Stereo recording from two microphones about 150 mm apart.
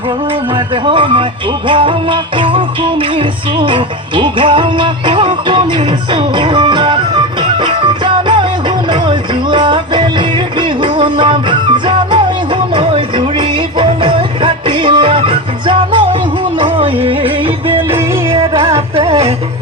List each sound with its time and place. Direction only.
0.9 s music: 35° right (ahead or behind)
12.7 s a sound: 35° right (ahead or behind)
13.7 s music: 35° right (ahead or behind)